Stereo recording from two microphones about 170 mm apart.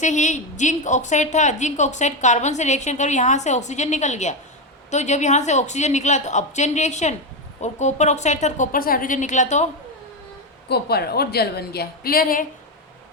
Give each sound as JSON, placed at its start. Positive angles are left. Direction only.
{"t": 0.0, "sound": "a woman's voice", "side_deg": 45}
{"t": 10.7, "sound": "a woman's voice", "side_deg": 70}